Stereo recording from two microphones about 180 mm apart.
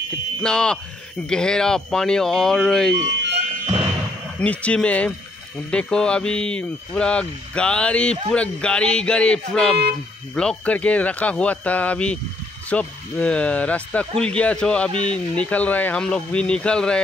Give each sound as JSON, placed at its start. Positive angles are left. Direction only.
{"t": 0.4, "sound": "speech", "side_deg": 5}
{"t": 4.4, "sound": "speech", "side_deg": 5}